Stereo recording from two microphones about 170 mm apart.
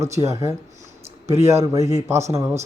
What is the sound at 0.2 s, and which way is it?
Speech, 25° right (ahead or behind).